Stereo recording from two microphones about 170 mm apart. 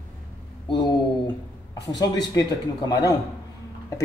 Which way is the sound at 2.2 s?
25° left (ahead or behind).